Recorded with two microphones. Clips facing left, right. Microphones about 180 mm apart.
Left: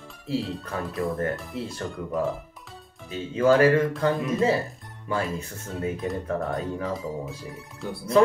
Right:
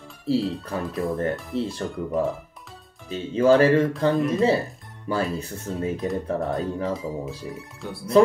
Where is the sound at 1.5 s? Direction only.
30° right (ahead or behind).